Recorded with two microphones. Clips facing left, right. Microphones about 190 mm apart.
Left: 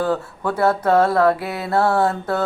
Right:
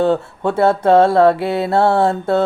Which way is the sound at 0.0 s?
25° right (ahead or behind).